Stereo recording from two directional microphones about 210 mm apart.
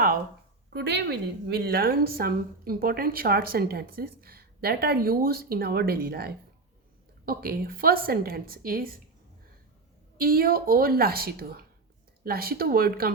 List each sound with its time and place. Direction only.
0.7 s a woman's voice: 55° right (ahead or behind)
10.2 s a woman's voice: 45° right (ahead or behind)